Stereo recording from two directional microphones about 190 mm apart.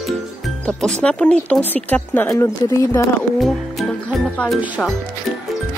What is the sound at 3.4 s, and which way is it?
Music, 5° left (ahead or behind).